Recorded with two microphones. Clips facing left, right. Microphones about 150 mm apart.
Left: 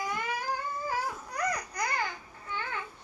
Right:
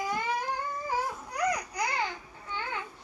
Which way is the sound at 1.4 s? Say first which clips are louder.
Right 3 dB; 10° right (ahead or behind).